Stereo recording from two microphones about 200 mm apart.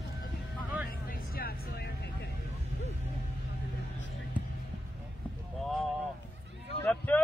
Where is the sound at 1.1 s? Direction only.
50° left (ahead or behind).